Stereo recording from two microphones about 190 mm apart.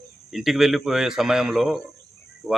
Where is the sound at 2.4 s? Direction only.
10° right (ahead or behind).